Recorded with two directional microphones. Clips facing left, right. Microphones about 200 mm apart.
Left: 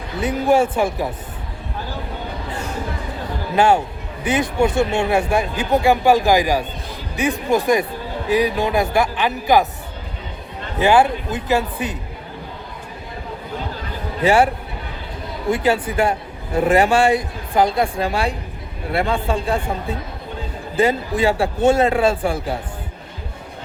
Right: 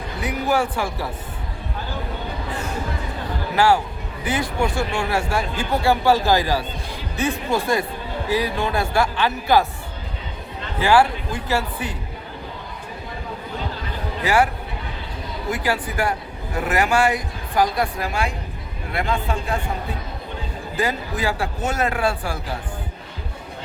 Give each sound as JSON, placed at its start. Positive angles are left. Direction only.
{"t": 0.2, "sound": "speech", "side_deg": 25}
{"t": 3.5, "sound": "a man's voice", "side_deg": 20}
{"t": 10.8, "sound": "speech", "side_deg": 20}
{"t": 14.2, "sound": "speech", "side_deg": 25}